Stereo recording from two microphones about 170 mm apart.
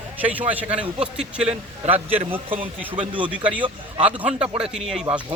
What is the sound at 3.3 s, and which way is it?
A man's voice, 10° right (ahead or behind).